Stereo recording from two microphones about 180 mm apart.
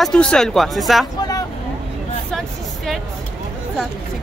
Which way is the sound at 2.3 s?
Centre (ahead or behind).